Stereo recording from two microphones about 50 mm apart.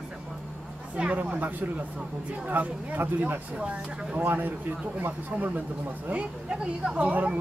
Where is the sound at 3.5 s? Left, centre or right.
Centre.